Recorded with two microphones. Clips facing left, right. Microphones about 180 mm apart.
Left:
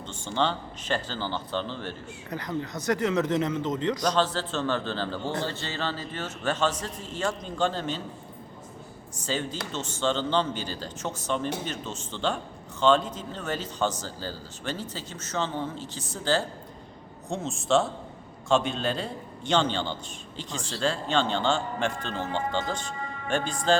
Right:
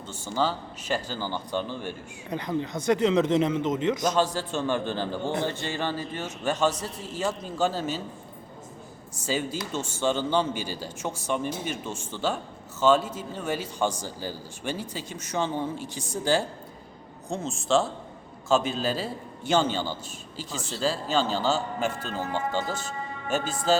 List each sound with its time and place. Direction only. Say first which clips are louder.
0.1 s speech: even; 5° right (ahead or behind)
2.7 s speech: right 3 dB; 20° right (ahead or behind)
4.1 s speech: right 1 dB; 10° right (ahead or behind)
9.2 s speech: right 2 dB; 10° right (ahead or behind)
17.2 s a man's voice: even; centre (ahead or behind)